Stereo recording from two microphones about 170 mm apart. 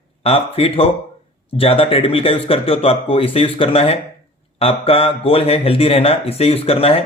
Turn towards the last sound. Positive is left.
turn(degrees=35)  # may be behind; listen again after turning